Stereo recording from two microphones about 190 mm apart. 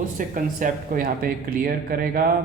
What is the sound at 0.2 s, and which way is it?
A man's voice, 45° right (ahead or behind).